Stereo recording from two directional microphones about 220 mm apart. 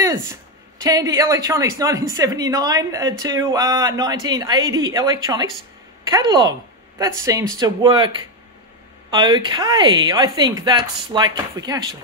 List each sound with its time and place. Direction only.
0.0 s a sound: 15° right (ahead or behind)
0.8 s speech: 15° right (ahead or behind)
9.1 s speech: 20° right (ahead or behind)